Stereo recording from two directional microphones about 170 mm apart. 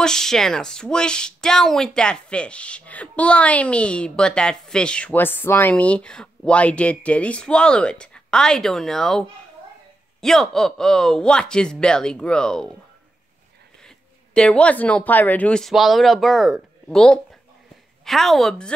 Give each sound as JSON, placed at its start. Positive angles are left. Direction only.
{"t": 0.0, "sound": "speech", "side_deg": 5}
{"t": 10.2, "sound": "speech", "side_deg": 5}
{"t": 13.8, "sound": "speech", "side_deg": 5}